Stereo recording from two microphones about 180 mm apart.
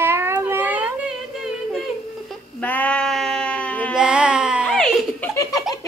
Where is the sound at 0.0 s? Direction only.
15° right (ahead or behind).